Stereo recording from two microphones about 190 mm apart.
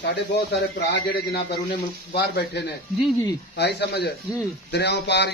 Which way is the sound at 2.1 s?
65° left (ahead or behind).